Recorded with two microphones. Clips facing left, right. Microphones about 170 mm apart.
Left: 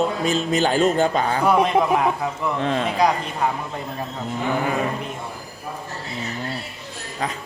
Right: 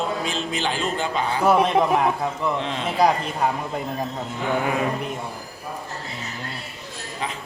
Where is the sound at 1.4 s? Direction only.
5° right (ahead or behind).